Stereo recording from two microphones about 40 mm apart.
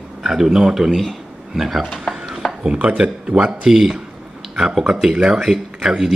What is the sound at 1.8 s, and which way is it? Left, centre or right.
Speech, centre.